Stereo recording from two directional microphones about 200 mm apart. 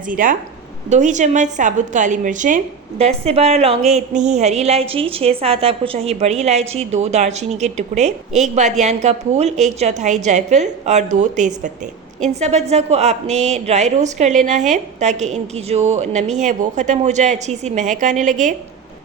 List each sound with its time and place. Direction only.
0.1 s speech: 40° right (ahead or behind)